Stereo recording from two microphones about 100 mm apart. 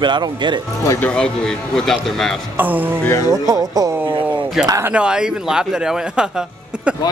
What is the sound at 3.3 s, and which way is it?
Speech, 35° right (ahead or behind).